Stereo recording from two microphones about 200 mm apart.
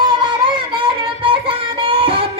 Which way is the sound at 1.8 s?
25° right (ahead or behind).